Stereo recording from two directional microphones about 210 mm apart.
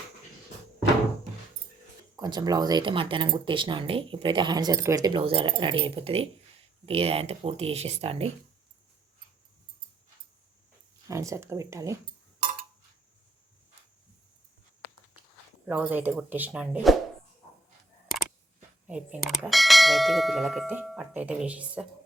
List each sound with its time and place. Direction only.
2.1 s speech: 20° right (ahead or behind)
11.1 s speech: 15° right (ahead or behind)
15.6 s speech: 10° right (ahead or behind)
16.9 s bell: centre (ahead or behind)
18.9 s bell: 5° right (ahead or behind)